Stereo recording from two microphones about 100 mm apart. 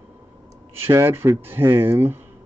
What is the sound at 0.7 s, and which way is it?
Speech, 25° right (ahead or behind).